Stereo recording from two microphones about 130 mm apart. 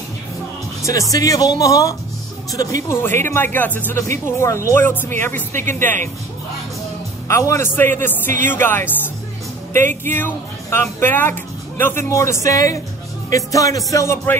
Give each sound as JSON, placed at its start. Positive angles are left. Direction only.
{"t": 0.8, "sound": "speech", "side_deg": 25}
{"t": 7.2, "sound": "speech", "side_deg": 20}
{"t": 9.7, "sound": "speech", "side_deg": -75}
{"t": 10.0, "sound": "speech", "side_deg": 15}